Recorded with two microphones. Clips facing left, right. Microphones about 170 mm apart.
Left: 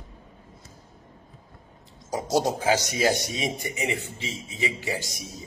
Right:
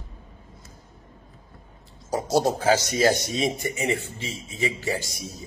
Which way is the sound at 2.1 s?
15° left (ahead or behind).